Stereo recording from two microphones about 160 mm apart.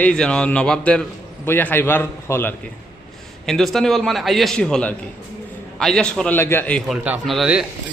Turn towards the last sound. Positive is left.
turn(degrees=-5)  # may be behind; listen again after turning